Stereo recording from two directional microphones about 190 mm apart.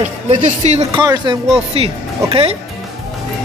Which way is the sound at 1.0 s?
25° right (ahead or behind).